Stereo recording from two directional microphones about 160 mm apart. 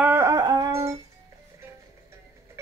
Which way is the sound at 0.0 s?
15° right (ahead or behind).